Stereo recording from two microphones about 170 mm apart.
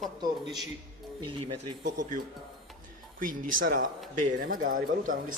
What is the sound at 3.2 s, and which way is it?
Speech, 55° right (ahead or behind).